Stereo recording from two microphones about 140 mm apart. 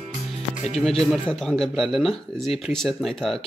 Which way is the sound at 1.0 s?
Centre (ahead or behind).